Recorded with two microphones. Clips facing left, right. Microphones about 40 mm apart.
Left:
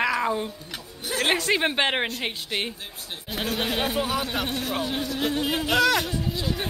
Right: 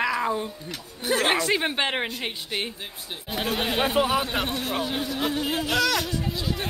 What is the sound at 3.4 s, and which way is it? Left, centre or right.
Speech, centre.